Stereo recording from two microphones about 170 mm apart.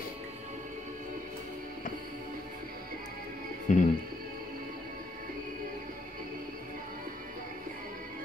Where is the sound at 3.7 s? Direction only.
50° left (ahead or behind).